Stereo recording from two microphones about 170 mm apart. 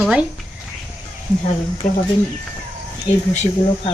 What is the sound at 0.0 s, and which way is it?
Speech, 5° right (ahead or behind).